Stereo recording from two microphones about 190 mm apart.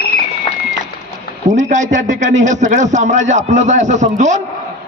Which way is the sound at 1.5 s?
40° right (ahead or behind).